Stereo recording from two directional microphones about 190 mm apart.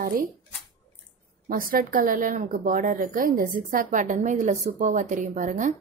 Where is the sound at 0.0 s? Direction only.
45° right (ahead or behind).